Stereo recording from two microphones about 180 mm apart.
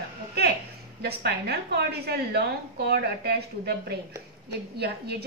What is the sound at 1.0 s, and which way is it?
A woman's voice, 65° right (ahead or behind).